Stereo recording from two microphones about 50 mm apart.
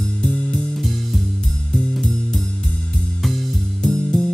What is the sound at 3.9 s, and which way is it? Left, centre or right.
Music, centre.